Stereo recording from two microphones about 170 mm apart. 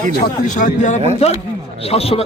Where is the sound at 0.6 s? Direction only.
45° left (ahead or behind).